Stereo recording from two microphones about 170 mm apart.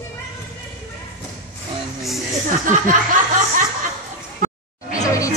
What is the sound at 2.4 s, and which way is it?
Speech, 50° right (ahead or behind).